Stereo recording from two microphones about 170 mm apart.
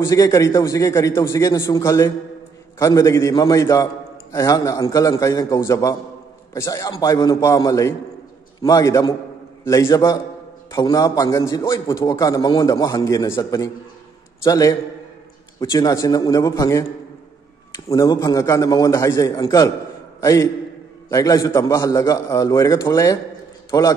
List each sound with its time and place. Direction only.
0.0 s a man's voice: 20° left (ahead or behind)